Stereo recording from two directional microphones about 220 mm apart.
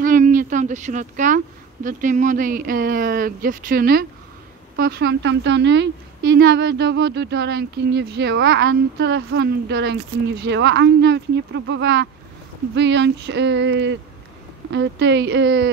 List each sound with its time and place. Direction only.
0.0 s a woman's voice: 35° right (ahead or behind)